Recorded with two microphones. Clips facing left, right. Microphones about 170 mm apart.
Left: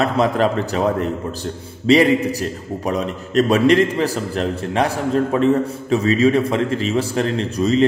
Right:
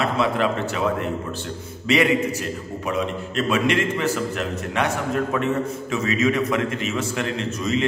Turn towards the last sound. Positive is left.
turn(degrees=35)  # may be behind; listen again after turning